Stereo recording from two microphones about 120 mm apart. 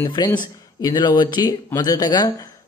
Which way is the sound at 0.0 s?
40° left (ahead or behind).